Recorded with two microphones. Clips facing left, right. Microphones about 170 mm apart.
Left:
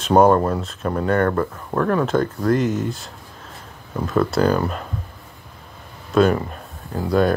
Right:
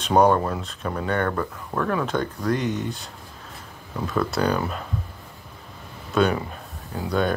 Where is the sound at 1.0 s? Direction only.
45° left (ahead or behind).